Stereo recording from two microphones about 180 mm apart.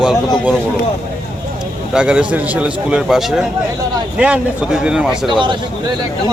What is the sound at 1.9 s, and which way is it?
A man's voice, 5° right (ahead or behind).